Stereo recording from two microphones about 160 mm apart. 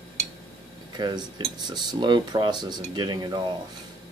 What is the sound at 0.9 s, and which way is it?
Speech, 25° right (ahead or behind).